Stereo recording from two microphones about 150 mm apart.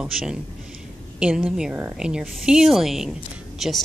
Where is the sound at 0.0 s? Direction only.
5° right (ahead or behind).